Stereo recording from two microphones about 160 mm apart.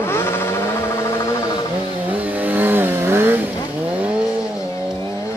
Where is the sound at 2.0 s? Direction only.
10° right (ahead or behind).